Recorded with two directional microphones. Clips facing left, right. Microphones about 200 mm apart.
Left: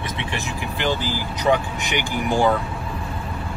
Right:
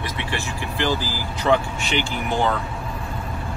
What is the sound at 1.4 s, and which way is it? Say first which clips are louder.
Speech: even; 15° left (ahead or behind).